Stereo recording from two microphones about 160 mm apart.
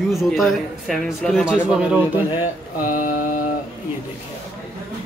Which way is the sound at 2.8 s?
55° left (ahead or behind).